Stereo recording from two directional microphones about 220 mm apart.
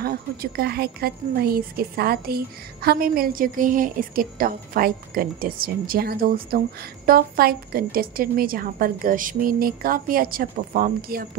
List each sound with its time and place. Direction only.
0.0 s a woman's voice: 45° right (ahead or behind)